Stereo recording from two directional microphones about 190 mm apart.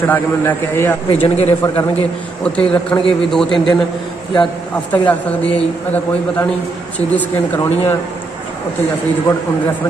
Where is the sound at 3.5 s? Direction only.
25° left (ahead or behind).